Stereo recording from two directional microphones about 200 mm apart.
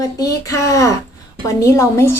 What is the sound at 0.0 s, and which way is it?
A woman's voice, 15° left (ahead or behind).